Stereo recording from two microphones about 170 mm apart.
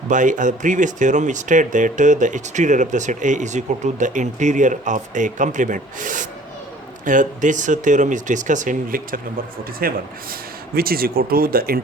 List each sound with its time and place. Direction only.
0.1 s speech: 50° right (ahead or behind)